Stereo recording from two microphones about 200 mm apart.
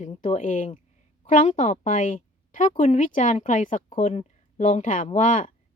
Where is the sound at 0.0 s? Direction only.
35° left (ahead or behind).